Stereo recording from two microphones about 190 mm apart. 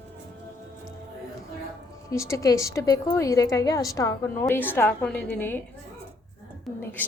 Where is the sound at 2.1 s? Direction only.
15° left (ahead or behind).